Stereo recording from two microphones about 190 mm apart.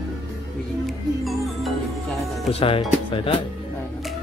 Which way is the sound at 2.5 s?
30° left (ahead or behind).